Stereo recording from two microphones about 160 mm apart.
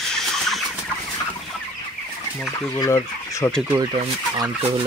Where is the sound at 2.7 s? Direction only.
20° left (ahead or behind).